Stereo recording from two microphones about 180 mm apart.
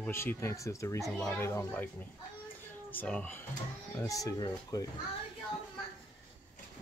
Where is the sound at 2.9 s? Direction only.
10° left (ahead or behind).